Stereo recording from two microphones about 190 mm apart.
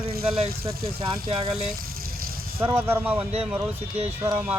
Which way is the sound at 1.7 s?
50° right (ahead or behind).